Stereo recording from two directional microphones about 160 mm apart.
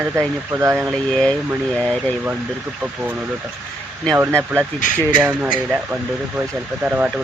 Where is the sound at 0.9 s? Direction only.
5° left (ahead or behind).